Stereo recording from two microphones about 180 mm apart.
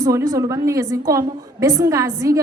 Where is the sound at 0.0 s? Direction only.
20° right (ahead or behind).